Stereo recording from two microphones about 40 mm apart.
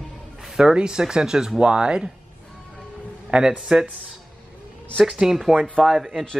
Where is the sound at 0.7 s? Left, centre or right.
Right.